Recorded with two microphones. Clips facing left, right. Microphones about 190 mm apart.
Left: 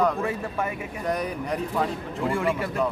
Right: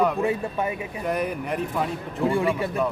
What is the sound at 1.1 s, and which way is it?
Speech, 5° right (ahead or behind).